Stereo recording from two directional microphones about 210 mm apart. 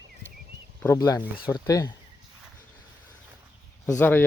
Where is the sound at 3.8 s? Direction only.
10° left (ahead or behind).